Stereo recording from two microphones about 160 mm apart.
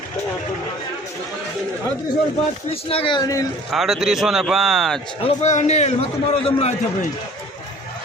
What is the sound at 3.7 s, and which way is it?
Speech, centre (ahead or behind).